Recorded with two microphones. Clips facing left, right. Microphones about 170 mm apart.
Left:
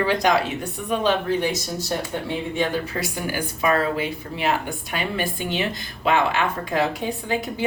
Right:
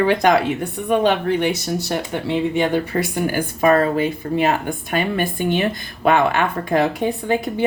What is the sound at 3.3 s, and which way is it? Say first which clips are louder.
Speech: right 5 dB; 50° right (ahead or behind).